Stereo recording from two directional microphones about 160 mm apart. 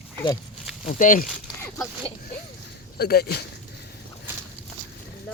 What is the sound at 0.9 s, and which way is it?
Speech, 55° left (ahead or behind).